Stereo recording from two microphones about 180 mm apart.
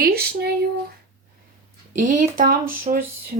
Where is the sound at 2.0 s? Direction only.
45° right (ahead or behind).